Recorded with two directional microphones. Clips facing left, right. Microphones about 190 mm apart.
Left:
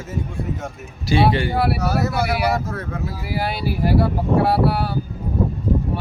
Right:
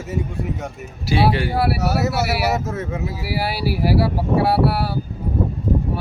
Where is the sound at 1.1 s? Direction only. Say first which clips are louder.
Left 1 dB; 5° right (ahead or behind).